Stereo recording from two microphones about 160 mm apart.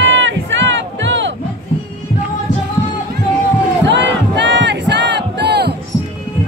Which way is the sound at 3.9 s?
90° right.